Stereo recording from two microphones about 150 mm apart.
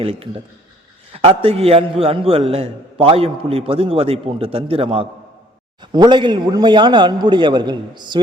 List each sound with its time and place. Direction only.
0.0 s a man's voice: 40° right (ahead or behind)